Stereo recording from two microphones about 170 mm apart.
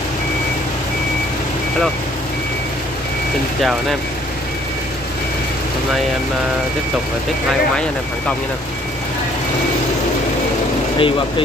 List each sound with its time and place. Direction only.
11.0 s speech: 30° left (ahead or behind)